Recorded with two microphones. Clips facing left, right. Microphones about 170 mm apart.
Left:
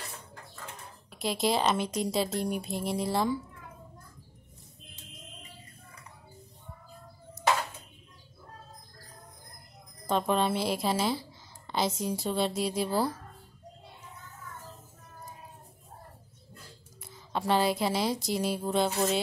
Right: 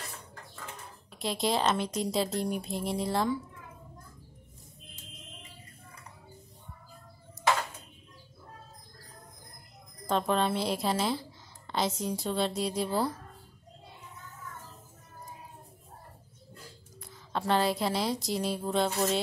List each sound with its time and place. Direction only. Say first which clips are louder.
1.1 s a woman's voice: left 1 dB; centre (ahead or behind)
10.0 s a woman's voice: left 1 dB; 5° left (ahead or behind)
17.0 s speech: left 1 dB; 5° left (ahead or behind)